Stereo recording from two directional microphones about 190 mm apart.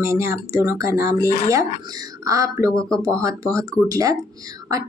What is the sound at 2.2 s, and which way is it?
A woman's voice, 20° right (ahead or behind).